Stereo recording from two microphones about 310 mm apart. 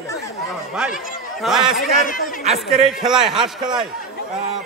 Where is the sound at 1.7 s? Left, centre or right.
Left.